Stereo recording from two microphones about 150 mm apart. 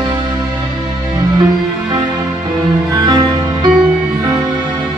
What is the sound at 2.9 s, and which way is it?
Music, 30° right (ahead or behind).